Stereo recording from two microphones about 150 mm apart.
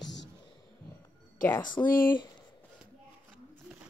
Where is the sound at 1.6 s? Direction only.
30° left (ahead or behind).